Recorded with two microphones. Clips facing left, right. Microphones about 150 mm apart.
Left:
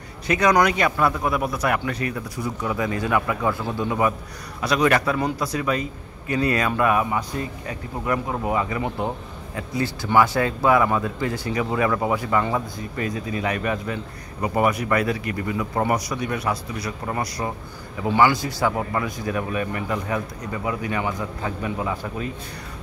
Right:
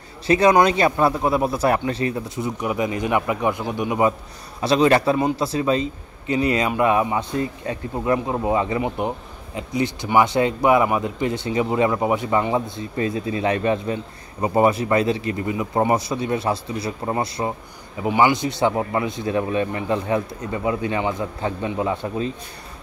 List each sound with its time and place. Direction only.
0.3 s speech: 25° right (ahead or behind)